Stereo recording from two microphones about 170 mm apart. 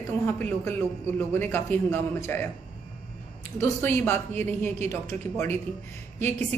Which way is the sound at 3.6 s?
15° left (ahead or behind).